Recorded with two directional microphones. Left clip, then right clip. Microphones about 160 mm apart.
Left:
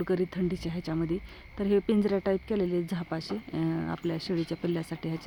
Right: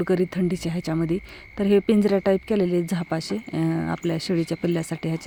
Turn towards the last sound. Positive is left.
turn(degrees=-45)  # may be behind; listen again after turning